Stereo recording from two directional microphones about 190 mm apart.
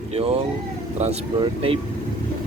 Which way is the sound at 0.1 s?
35° right (ahead or behind).